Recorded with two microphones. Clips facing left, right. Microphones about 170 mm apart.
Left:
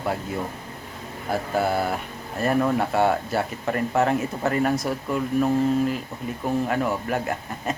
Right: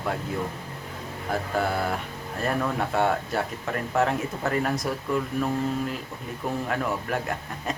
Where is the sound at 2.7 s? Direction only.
5° left (ahead or behind).